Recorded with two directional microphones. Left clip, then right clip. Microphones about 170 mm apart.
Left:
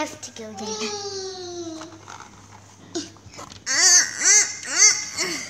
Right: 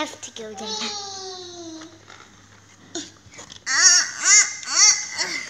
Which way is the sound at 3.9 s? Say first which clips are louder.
Even; 20° left (ahead or behind).